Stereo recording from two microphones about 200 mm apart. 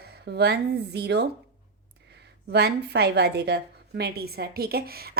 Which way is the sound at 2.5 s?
55° right (ahead or behind).